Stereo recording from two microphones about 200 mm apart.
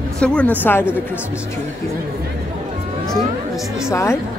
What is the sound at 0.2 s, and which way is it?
Speech, 5° left (ahead or behind).